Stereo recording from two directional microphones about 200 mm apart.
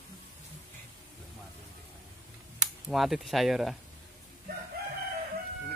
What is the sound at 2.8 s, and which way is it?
Speech, centre (ahead or behind).